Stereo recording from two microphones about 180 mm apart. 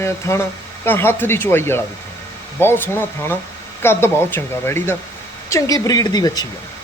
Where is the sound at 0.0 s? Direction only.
15° left (ahead or behind).